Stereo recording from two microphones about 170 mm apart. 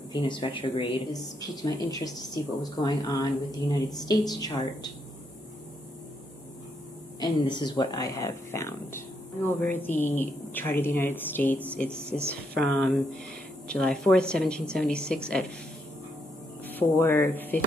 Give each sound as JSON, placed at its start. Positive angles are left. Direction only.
{"t": 0.1, "sound": "speech", "side_deg": 30}
{"t": 7.2, "sound": "a woman's voice", "side_deg": 25}
{"t": 16.6, "sound": "speech", "side_deg": 10}